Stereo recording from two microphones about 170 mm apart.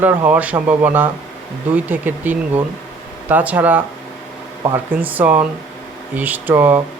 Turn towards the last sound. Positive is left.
turn(degrees=-10)  # may be behind; listen again after turning